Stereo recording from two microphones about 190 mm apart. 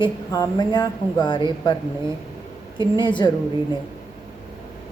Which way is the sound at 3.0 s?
25° left (ahead or behind).